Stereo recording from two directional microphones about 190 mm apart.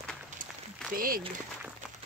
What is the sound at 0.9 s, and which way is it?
Speech, 50° right (ahead or behind).